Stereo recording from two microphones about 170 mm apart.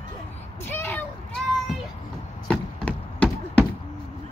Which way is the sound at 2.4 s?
5° left (ahead or behind).